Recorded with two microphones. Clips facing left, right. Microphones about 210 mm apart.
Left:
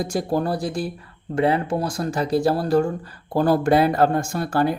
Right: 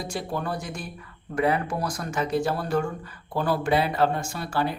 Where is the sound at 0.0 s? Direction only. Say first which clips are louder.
Left 8 dB; 45° left (ahead or behind).